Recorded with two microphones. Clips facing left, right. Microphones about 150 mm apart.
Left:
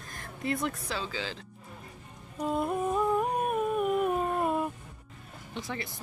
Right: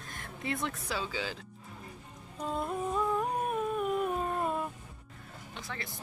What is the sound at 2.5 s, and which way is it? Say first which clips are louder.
Humming: left 4 dB; 15° left (ahead or behind).